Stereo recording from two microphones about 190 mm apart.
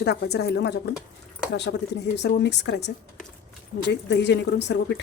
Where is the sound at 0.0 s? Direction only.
60° left (ahead or behind).